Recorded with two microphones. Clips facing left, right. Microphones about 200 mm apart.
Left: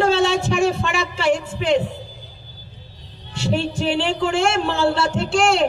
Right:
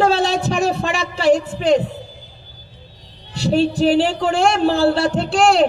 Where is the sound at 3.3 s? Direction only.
35° right (ahead or behind).